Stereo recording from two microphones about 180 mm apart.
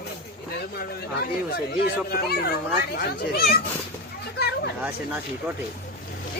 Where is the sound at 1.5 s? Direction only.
60° left (ahead or behind).